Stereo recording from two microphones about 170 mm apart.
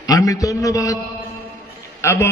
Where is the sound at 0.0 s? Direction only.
20° left (ahead or behind).